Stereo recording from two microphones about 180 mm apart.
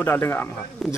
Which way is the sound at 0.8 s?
Centre (ahead or behind).